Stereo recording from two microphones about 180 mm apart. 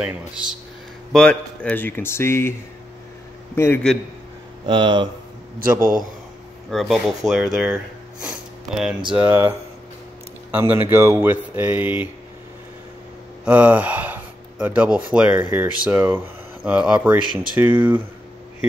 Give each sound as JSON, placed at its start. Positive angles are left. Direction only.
{"t": 0.0, "sound": "speech", "side_deg": -5}
{"t": 1.1, "sound": "speech", "side_deg": 5}
{"t": 3.5, "sound": "speech", "side_deg": 10}
{"t": 4.6, "sound": "speech", "side_deg": -25}
{"t": 5.8, "sound": "a man's voice", "side_deg": -50}
{"t": 6.7, "sound": "speech", "side_deg": 0}
{"t": 9.1, "sound": "speech", "side_deg": -15}
{"t": 10.5, "sound": "speech", "side_deg": -10}
{"t": 13.5, "sound": "speech", "side_deg": -10}